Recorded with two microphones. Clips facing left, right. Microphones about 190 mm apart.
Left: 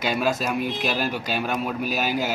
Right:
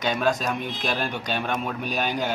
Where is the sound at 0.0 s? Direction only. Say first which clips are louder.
Even; 5° left (ahead or behind).